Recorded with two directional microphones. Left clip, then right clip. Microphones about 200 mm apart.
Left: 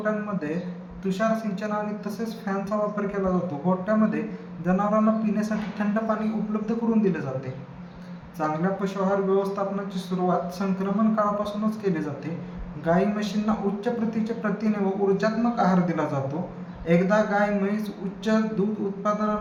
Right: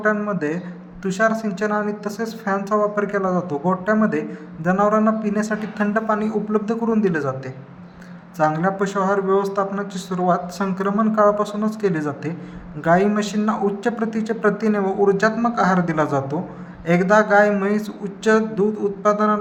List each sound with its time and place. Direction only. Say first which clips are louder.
0.0 s a man's voice: right 7 dB; 50° right (ahead or behind)
8.4 s a man's voice: right 7 dB; 50° right (ahead or behind)